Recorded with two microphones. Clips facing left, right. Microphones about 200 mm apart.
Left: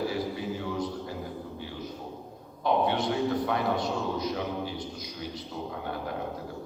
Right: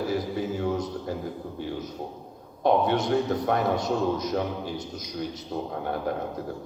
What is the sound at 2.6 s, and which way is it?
A man's voice, 45° right (ahead or behind).